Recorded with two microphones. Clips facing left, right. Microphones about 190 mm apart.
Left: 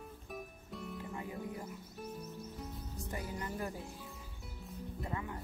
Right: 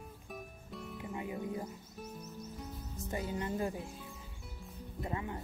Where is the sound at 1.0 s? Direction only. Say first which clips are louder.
Right 6 dB; 20° right (ahead or behind).